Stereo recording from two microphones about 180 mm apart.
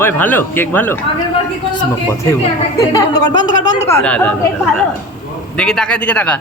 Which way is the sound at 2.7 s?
20° left (ahead or behind).